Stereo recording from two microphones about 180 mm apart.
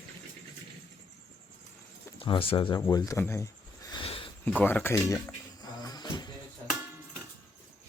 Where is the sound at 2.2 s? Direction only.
30° left (ahead or behind).